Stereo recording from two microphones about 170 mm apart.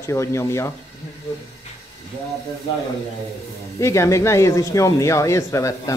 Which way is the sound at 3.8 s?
15° left (ahead or behind).